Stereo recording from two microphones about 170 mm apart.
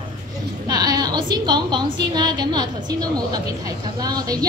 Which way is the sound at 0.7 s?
25° right (ahead or behind).